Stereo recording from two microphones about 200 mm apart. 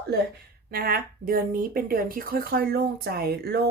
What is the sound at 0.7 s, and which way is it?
Speech, 45° right (ahead or behind).